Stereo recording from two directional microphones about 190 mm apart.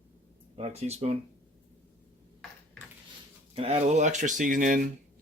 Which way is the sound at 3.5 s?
35° right (ahead or behind).